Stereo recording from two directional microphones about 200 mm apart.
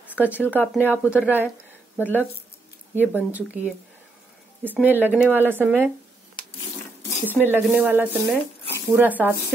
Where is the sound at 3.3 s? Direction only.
10° right (ahead or behind).